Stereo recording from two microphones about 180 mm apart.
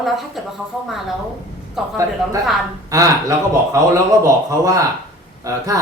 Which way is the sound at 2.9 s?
15° right (ahead or behind).